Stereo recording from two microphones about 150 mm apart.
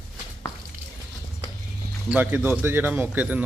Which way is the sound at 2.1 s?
10° right (ahead or behind).